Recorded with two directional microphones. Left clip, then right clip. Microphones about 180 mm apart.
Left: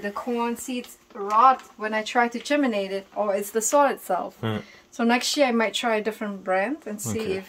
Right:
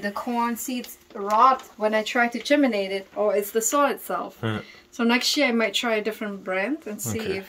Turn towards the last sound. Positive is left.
turn(degrees=25)  # may be behind; listen again after turning